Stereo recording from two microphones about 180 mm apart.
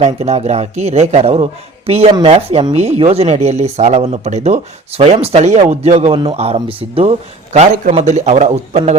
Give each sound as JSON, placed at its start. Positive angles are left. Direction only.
{"t": 0.0, "sound": "speech", "side_deg": -35}